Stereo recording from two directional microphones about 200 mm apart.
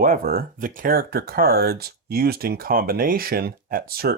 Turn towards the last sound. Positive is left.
turn(degrees=-50)  # may be behind; listen again after turning